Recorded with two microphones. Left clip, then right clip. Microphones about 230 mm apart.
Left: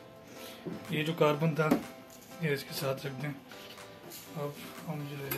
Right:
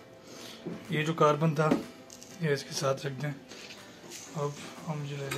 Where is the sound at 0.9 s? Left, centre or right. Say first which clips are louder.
Right 3 dB; centre.